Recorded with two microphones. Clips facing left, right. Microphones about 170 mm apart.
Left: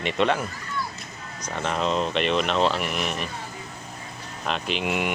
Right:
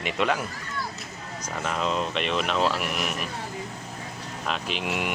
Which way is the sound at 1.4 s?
5° right (ahead or behind).